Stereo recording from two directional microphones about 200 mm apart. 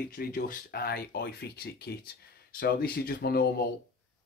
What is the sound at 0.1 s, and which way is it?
Speech, 45° left (ahead or behind).